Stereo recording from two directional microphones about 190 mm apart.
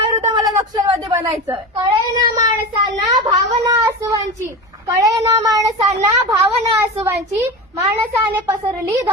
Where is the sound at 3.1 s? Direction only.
20° right (ahead or behind).